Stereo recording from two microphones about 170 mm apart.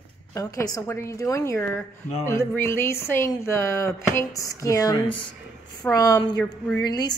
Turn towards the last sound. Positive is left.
turn(degrees=25)  # may be behind; listen again after turning